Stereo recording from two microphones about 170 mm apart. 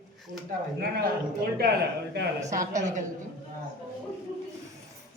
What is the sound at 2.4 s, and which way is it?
Speech, 45° right (ahead or behind).